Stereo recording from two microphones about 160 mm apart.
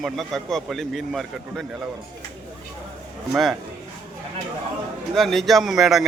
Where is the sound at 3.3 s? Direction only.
90° left.